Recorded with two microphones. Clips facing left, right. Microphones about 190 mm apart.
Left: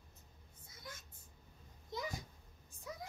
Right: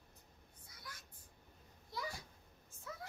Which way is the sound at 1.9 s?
20° left (ahead or behind).